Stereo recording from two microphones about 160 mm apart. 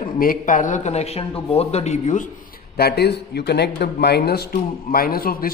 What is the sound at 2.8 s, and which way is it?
A man's voice, 85° left.